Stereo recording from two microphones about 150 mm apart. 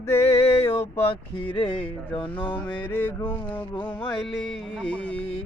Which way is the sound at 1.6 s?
35° left (ahead or behind).